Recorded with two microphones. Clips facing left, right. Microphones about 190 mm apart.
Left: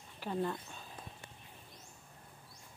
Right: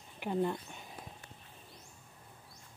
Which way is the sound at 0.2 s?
15° right (ahead or behind).